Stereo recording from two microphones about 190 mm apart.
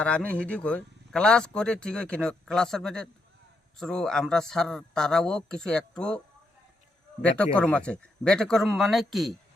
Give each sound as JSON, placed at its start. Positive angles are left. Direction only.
{"t": 0.0, "sound": "speech", "side_deg": 5}